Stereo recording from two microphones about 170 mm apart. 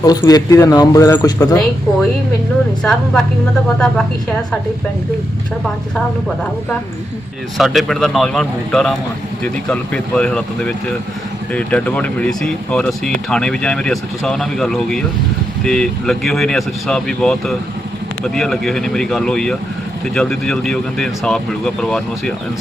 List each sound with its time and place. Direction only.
0.0 s speech: 25° left (ahead or behind)
2.8 s speech: 5° left (ahead or behind)
7.6 s speech: centre (ahead or behind)